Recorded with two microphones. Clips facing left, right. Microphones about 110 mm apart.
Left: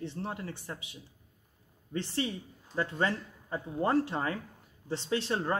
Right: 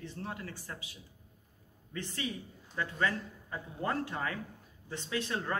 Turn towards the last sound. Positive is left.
turn(degrees=30)  # may be behind; listen again after turning